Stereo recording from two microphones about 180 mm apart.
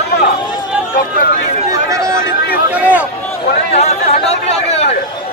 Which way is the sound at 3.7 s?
35° left (ahead or behind).